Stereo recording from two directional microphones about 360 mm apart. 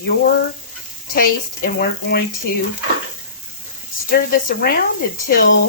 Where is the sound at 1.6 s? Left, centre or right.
Left.